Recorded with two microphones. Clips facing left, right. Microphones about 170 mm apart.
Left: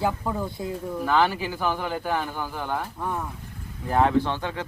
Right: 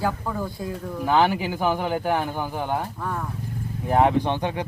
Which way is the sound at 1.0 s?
15° right (ahead or behind).